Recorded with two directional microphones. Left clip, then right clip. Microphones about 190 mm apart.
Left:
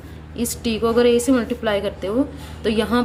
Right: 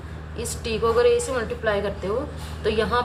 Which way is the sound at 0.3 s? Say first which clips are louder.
Left 3 dB; 40° left (ahead or behind).